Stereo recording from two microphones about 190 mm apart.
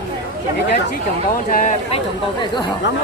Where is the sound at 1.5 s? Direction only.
40° left (ahead or behind).